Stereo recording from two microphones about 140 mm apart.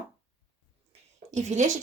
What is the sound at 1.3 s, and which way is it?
Speech, 60° right (ahead or behind).